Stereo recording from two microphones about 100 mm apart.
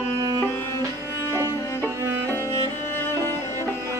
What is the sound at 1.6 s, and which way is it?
Music, 30° left (ahead or behind).